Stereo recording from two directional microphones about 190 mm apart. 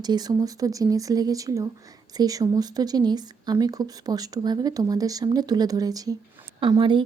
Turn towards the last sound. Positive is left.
turn(degrees=-25)  # may be behind; listen again after turning